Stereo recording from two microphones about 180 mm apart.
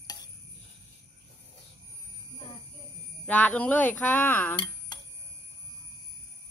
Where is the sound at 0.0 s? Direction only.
20° left (ahead or behind).